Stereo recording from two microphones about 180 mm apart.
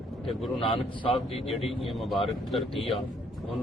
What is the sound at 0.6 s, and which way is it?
Speech, 30° left (ahead or behind).